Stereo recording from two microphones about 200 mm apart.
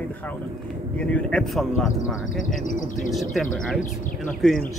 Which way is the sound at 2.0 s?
40° left (ahead or behind).